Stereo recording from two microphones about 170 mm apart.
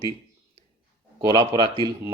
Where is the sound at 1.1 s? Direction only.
25° right (ahead or behind).